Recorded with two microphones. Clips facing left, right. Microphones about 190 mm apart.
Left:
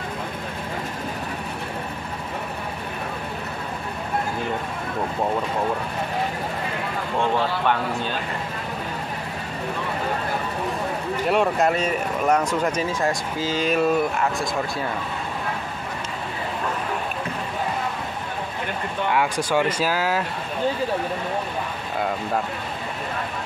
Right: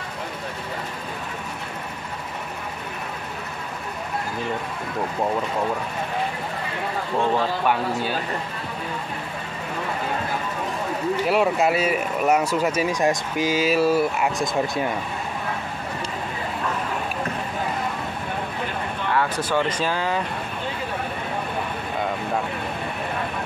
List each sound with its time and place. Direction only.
7.6 s speech: 10° right (ahead or behind)
11.2 s speech: 5° right (ahead or behind)
19.1 s speech: 10° left (ahead or behind)